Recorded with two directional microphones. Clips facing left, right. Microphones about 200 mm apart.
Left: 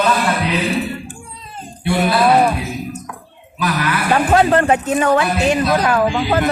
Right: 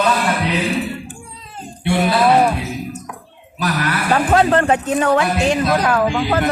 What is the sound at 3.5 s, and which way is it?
Speech, 40° right (ahead or behind).